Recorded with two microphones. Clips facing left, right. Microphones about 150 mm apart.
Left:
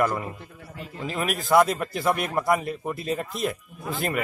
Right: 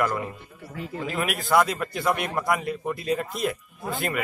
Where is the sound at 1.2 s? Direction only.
Centre (ahead or behind).